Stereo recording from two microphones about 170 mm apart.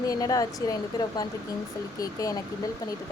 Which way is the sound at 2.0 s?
20° left (ahead or behind).